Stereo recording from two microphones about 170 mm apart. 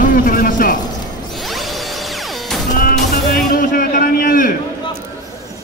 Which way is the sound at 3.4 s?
55° left (ahead or behind).